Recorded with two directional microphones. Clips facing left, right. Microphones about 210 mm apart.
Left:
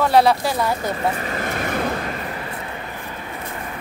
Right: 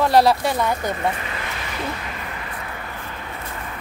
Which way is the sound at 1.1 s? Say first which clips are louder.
Left 6 dB; 40° left (ahead or behind).